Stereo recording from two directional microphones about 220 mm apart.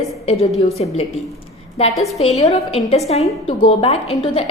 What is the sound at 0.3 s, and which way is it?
A woman's voice, 30° left (ahead or behind).